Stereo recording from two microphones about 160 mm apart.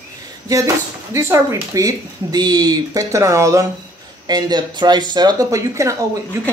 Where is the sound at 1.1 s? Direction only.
15° right (ahead or behind).